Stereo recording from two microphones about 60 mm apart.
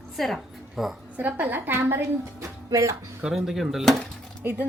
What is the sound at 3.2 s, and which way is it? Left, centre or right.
Speech, centre.